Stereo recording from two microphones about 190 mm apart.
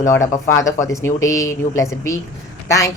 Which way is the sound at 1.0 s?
15° left (ahead or behind).